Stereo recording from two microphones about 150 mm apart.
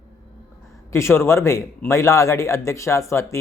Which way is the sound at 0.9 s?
15° left (ahead or behind).